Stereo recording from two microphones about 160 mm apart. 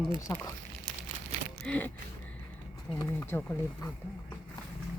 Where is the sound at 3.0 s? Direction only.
15° left (ahead or behind).